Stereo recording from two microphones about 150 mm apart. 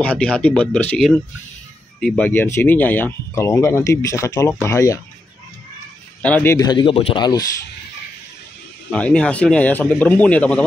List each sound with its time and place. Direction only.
0.0 s speech: 10° left (ahead or behind)
6.2 s speech: 10° left (ahead or behind)
6.5 s speech: 30° left (ahead or behind)
8.9 s speech: 5° left (ahead or behind)